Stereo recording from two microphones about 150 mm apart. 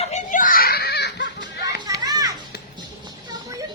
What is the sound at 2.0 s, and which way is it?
Children playing, 25° right (ahead or behind).